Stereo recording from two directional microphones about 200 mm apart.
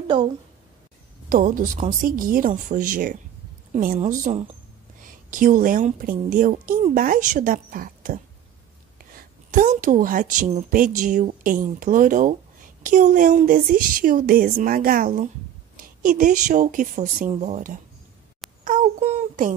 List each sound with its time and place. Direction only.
1.3 s speech: 45° right (ahead or behind)
9.5 s speech: 40° right (ahead or behind)
18.6 s a sound: 35° right (ahead or behind)